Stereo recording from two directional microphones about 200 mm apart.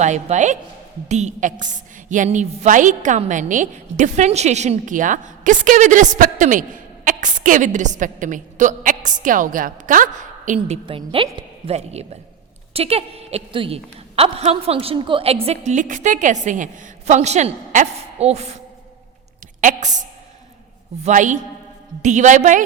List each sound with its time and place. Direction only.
0.0 s a woman's voice: 35° right (ahead or behind)
10.8 s a woman's voice: 25° right (ahead or behind)
21.0 s a woman's voice: 40° right (ahead or behind)